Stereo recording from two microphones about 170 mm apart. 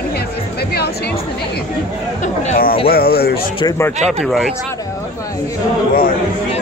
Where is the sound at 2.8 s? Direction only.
65° left (ahead or behind).